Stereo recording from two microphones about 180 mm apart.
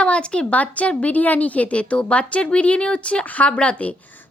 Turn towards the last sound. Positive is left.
turn(degrees=5)  # may be behind; listen again after turning